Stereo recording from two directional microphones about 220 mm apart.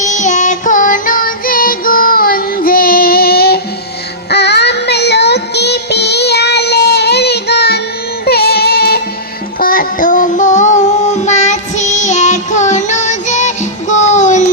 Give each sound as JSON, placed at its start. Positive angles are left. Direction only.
{"t": 0.0, "sound": "music", "side_deg": 35}
{"t": 9.6, "sound": "child singing", "side_deg": 40}